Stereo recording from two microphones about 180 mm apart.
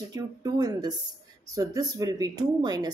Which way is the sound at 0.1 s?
20° right (ahead or behind).